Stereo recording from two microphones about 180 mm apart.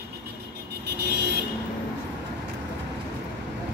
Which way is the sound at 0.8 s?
70° right (ahead or behind).